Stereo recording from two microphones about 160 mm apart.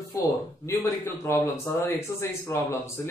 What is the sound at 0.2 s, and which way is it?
A man's voice, 20° left (ahead or behind).